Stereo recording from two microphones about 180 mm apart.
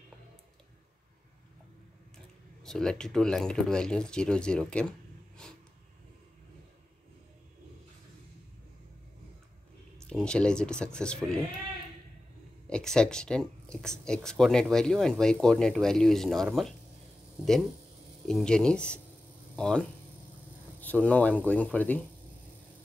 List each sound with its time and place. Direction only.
2.6 s speech: 5° left (ahead or behind)
5.4 s a sound: 5° left (ahead or behind)
10.0 s speech: 5° left (ahead or behind)
12.6 s speech: 5° left (ahead or behind)
18.2 s speech: 5° left (ahead or behind)